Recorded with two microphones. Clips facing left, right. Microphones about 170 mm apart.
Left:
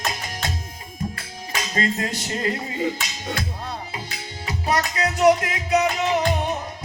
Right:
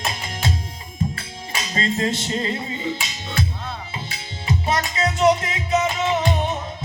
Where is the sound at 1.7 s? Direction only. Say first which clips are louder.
Right 2 dB; 25° right (ahead or behind).